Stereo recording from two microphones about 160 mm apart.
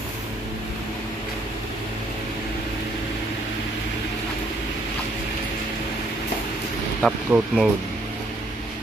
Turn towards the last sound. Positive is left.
turn(degrees=0)  # may be behind; listen again after turning